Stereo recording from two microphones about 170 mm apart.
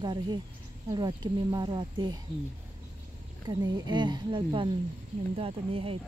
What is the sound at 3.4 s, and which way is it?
Speech, 25° right (ahead or behind).